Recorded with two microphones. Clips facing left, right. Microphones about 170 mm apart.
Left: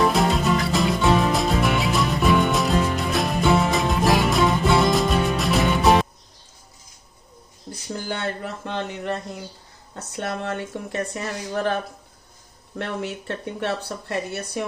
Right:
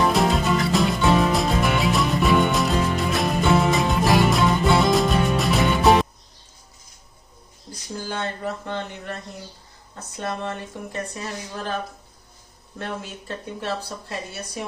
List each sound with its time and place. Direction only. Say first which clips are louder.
0.0 s music: even; centre (ahead or behind)
8.0 s a sound: right 1 dB; 75° left (ahead or behind); by 9.1 s 90° left
9.9 s a woman's voice: left 1 dB; 70° left (ahead or behind)
12.8 s speech: left 4 dB; 65° left (ahead or behind)